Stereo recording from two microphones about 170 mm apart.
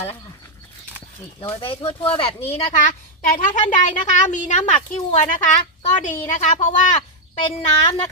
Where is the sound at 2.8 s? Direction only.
50° left (ahead or behind).